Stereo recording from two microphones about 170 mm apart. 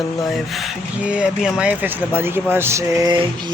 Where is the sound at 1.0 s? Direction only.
5° right (ahead or behind).